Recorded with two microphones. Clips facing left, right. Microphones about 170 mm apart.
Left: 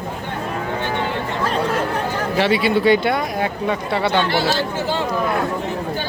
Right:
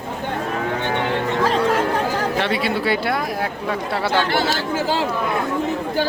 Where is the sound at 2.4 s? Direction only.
5° left (ahead or behind).